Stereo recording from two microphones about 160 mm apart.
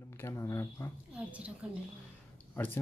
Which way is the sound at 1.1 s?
10° right (ahead or behind).